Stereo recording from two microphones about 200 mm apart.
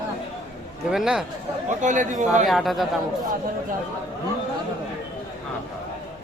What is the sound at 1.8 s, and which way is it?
Speech, 40° right (ahead or behind).